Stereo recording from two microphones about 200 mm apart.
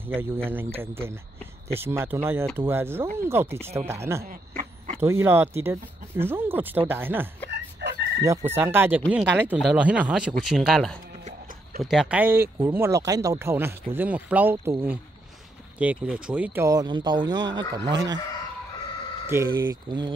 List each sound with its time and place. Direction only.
0.0 s speech: 10° right (ahead or behind)
4.3 s a sound: 40° right (ahead or behind)
5.0 s speech: 10° right (ahead or behind)
7.5 s fowl: 60° right (ahead or behind)
8.2 s speech: 15° right (ahead or behind)
19.3 s speech: 15° right (ahead or behind)